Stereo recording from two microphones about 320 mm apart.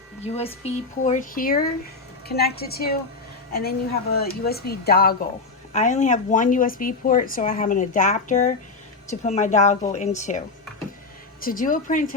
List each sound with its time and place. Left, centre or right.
0.3 s a woman's voice: centre